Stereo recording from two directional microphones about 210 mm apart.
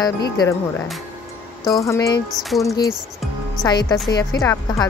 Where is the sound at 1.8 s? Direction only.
15° left (ahead or behind).